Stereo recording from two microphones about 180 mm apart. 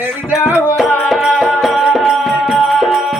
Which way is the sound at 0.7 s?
Centre (ahead or behind).